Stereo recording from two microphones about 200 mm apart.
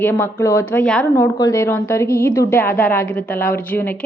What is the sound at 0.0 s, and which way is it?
A woman's voice, 10° left (ahead or behind).